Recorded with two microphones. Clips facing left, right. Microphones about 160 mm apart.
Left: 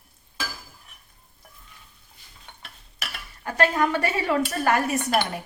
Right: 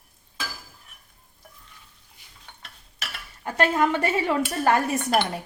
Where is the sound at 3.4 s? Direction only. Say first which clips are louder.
Even; 25° right (ahead or behind).